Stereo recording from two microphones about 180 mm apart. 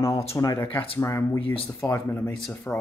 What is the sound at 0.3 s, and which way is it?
Speech, 15° left (ahead or behind).